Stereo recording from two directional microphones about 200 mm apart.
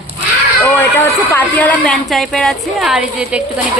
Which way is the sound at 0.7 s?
10° left (ahead or behind).